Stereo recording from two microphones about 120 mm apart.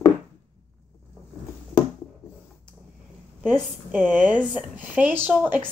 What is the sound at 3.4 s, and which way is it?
A woman's voice, 10° right (ahead or behind).